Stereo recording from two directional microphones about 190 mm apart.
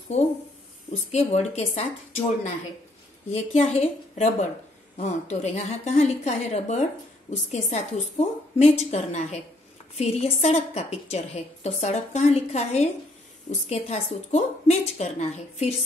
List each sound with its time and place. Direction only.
1.1 s a woman's voice: 35° left (ahead or behind)